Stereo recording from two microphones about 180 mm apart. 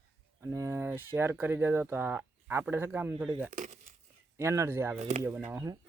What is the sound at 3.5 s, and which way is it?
Speech, 40° right (ahead or behind).